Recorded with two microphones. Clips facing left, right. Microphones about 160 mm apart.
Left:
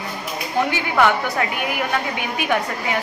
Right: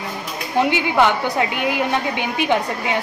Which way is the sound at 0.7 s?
20° right (ahead or behind).